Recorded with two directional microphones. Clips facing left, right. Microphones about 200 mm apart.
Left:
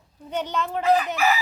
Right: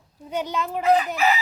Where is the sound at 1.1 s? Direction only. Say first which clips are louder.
Right 1 dB; 20° right (ahead or behind).